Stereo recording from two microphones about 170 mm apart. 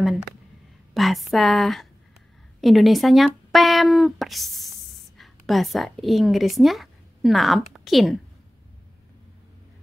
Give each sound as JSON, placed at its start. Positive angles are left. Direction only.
{"t": 0.9, "sound": "a woman's voice", "side_deg": 0}